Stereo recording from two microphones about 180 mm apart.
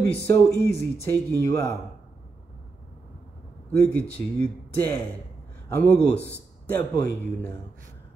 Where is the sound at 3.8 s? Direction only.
10° left (ahead or behind).